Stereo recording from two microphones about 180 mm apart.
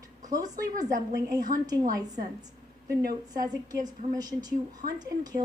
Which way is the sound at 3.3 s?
20° right (ahead or behind).